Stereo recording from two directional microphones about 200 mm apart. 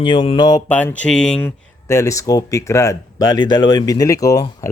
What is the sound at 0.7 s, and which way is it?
Speech, 5° left (ahead or behind).